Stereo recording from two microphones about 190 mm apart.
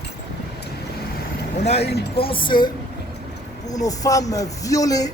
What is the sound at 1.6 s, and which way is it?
Speech, 35° left (ahead or behind).